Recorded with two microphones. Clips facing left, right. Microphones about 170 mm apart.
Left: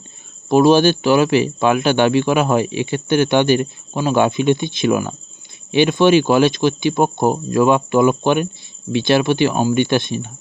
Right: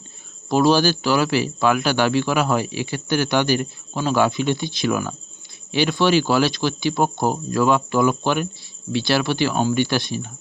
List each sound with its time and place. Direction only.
0.4 s speech: 20° left (ahead or behind)